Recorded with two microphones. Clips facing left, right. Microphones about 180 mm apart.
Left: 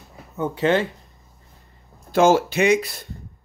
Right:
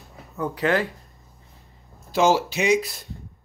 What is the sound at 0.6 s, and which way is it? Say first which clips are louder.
Speech: left 3 dB; 25° left (ahead or behind).